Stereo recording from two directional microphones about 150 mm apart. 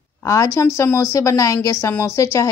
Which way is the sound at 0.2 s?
20° left (ahead or behind).